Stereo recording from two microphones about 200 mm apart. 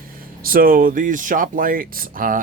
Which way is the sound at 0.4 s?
45° right (ahead or behind).